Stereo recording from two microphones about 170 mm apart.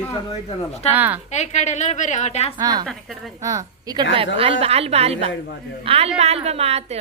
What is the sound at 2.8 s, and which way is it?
Speech, centre (ahead or behind).